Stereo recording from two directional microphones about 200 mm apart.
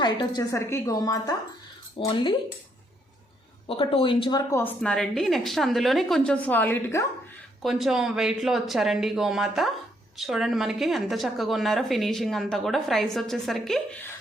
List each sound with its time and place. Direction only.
0.0 s a woman's voice: 20° left (ahead or behind)
3.7 s a woman's voice: 25° left (ahead or behind); by 7.0 s 10° left (ahead or behind)
7.6 s speech: centre (ahead or behind)